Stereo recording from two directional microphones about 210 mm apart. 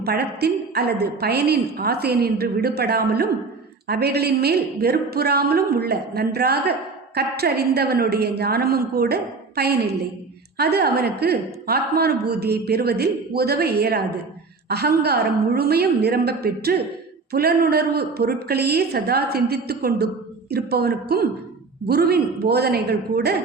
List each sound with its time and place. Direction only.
0.0 s a woman's voice: 50° right (ahead or behind)